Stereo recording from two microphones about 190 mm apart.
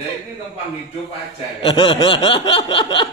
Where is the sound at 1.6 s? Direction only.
25° left (ahead or behind).